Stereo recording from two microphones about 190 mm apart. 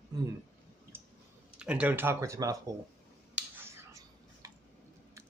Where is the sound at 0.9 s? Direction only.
10° right (ahead or behind).